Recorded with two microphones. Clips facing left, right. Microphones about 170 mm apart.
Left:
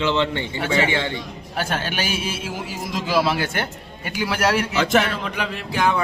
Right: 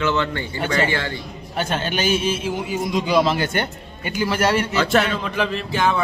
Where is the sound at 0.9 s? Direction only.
25° left (ahead or behind).